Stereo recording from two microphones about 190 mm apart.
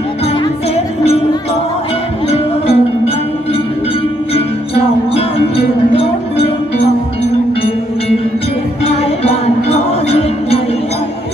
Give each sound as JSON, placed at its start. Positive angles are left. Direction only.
{"t": 0.7, "sound": "music", "side_deg": 30}
{"t": 4.3, "sound": "music", "side_deg": 30}
{"t": 8.8, "sound": "music", "side_deg": 35}